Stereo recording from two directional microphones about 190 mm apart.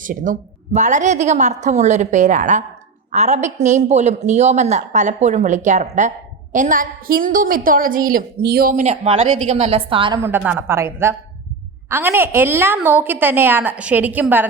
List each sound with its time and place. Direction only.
0.0 s a woman's voice: 45° right (ahead or behind); by 10.2 s 25° right (ahead or behind)
10.2 s a woman's voice: 10° right (ahead or behind)